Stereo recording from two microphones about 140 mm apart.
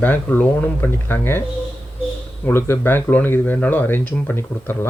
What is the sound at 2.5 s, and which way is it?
Speech, 15° left (ahead or behind).